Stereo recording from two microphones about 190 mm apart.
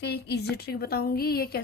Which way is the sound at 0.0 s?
60° left (ahead or behind).